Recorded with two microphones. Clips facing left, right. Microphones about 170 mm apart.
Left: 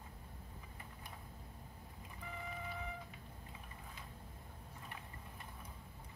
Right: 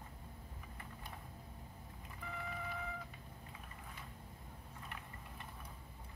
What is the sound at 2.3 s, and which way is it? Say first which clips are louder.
Vehicle: right 1 dB; 15° left (ahead or behind).